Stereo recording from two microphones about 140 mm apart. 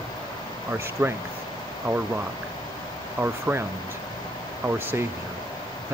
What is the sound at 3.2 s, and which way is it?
Speech, 15° right (ahead or behind).